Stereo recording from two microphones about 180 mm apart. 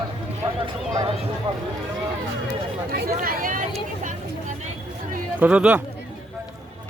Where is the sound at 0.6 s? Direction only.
25° right (ahead or behind).